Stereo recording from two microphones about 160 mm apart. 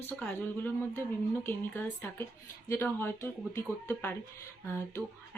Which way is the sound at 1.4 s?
15° left (ahead or behind).